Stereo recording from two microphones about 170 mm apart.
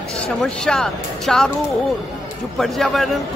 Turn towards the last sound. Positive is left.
turn(degrees=0)  # may be behind; listen again after turning